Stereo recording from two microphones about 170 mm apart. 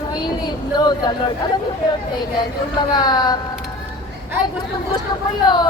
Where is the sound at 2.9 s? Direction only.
25° left (ahead or behind).